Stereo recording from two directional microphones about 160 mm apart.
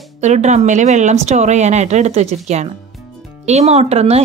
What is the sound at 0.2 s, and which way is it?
A woman's voice, 45° right (ahead or behind).